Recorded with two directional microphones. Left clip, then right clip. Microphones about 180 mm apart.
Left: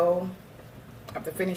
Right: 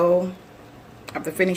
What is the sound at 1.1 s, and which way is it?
Speech, 45° right (ahead or behind).